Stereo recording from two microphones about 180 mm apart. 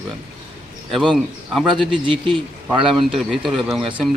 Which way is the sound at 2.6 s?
Centre (ahead or behind).